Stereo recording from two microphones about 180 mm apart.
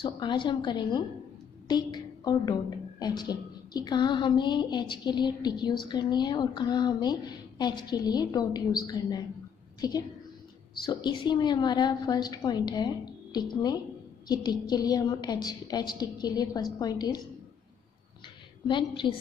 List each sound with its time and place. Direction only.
0.0 s a woman's voice: 25° left (ahead or behind)
18.7 s a woman's voice: 25° left (ahead or behind)